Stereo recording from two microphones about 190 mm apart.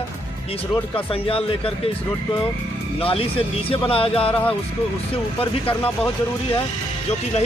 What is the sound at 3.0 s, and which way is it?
Speech, 30° left (ahead or behind).